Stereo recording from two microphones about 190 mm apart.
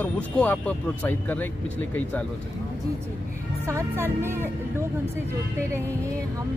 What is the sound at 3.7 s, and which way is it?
Speech, 15° right (ahead or behind).